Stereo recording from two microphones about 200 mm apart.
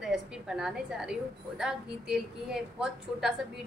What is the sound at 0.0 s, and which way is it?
A woman's voice, 5° right (ahead or behind).